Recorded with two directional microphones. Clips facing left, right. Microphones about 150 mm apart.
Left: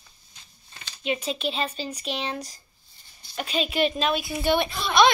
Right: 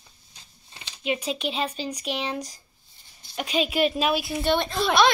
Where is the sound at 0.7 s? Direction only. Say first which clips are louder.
Even; 25° right (ahead or behind).